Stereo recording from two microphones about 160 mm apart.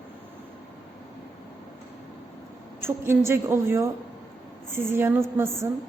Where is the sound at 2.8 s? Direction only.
15° right (ahead or behind).